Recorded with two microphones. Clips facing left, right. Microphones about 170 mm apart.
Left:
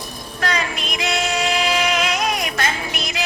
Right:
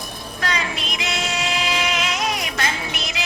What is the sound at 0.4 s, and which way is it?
Music, 50° left (ahead or behind).